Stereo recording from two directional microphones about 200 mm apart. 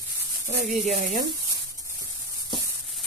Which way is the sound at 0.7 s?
35° right (ahead or behind).